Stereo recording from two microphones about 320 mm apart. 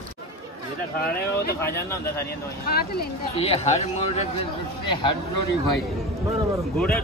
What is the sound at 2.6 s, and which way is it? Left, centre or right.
Speech, left.